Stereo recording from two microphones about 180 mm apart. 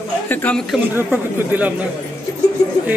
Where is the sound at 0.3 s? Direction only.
10° left (ahead or behind).